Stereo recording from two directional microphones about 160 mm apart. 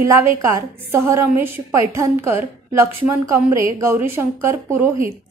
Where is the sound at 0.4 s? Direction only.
15° right (ahead or behind).